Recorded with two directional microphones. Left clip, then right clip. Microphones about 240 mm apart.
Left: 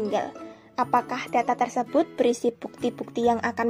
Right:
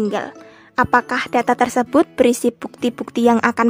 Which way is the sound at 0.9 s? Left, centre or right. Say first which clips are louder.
Right 6 dB; right.